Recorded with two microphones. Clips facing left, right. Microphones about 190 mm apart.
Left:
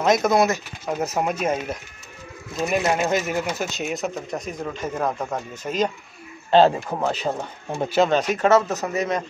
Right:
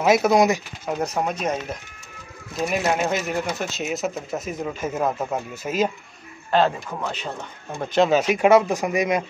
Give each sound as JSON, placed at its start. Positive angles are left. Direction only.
{"t": 0.0, "sound": "speech", "side_deg": -5}
{"t": 0.8, "sound": "speech", "side_deg": 5}
{"t": 6.5, "sound": "speech", "side_deg": 30}
{"t": 7.9, "sound": "speech", "side_deg": -5}